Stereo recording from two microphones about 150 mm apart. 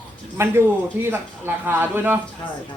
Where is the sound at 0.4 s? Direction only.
20° right (ahead or behind).